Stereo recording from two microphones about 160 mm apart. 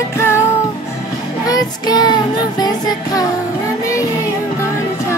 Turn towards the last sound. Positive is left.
turn(degrees=25)  # may be behind; listen again after turning